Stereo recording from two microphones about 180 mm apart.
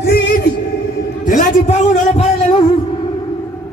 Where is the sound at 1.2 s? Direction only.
40° left (ahead or behind).